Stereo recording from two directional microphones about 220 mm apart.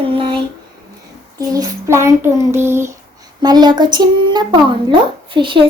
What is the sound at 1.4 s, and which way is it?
Child singing, 15° right (ahead or behind).